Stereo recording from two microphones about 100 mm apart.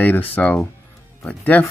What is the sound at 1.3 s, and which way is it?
Speech, 15° left (ahead or behind).